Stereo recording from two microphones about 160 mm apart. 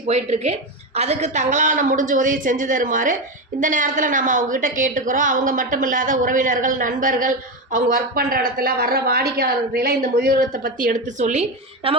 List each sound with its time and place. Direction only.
0.1 s a woman's voice: 45° right (ahead or behind)